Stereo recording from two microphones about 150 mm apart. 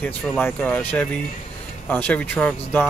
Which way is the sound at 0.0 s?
10° left (ahead or behind).